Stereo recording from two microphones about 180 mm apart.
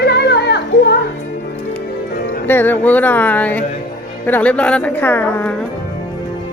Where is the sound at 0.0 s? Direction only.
70° left (ahead or behind).